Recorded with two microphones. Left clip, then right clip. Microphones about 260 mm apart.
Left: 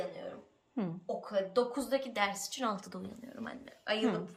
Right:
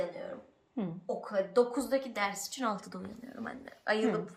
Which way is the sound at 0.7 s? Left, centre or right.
Centre.